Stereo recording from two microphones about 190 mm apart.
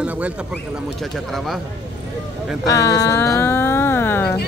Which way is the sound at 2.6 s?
20° left (ahead or behind).